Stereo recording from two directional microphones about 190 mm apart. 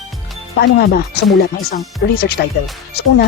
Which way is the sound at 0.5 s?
60° left (ahead or behind).